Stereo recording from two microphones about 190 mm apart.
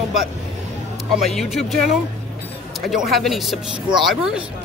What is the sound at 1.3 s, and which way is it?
Speech, centre (ahead or behind).